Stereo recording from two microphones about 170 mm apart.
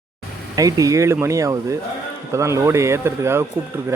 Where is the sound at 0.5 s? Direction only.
20° right (ahead or behind).